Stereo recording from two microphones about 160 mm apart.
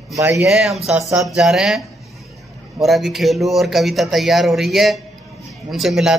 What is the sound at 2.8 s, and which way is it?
Speech, centre (ahead or behind).